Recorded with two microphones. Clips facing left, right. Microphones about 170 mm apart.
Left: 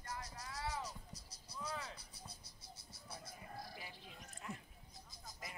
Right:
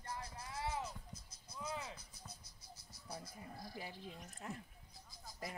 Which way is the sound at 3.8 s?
40° right (ahead or behind).